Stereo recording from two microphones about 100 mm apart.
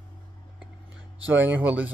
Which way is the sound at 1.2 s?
20° right (ahead or behind).